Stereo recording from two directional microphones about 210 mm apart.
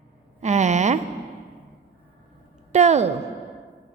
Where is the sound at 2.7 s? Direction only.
30° right (ahead or behind).